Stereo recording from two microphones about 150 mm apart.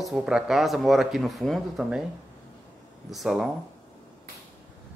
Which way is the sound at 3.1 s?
5° right (ahead or behind).